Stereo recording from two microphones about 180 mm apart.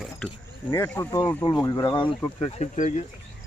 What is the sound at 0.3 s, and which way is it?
Speech, 20° left (ahead or behind).